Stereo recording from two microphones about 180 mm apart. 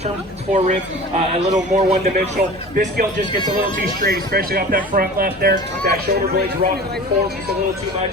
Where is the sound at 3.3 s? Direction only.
25° left (ahead or behind).